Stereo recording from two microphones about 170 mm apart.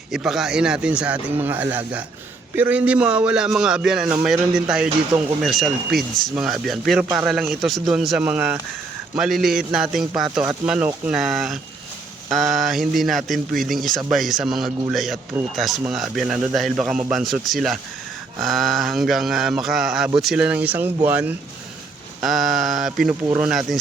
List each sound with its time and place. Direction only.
0.1 s a man's voice: centre (ahead or behind)
23.2 s speech: 15° right (ahead or behind)
23.5 s a man's voice: centre (ahead or behind)